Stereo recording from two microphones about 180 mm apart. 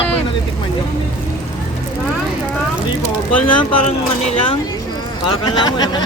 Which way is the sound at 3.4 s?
25° left (ahead or behind).